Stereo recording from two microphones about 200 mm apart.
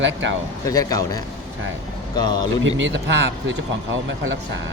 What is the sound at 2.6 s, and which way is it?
Speech, 70° right (ahead or behind).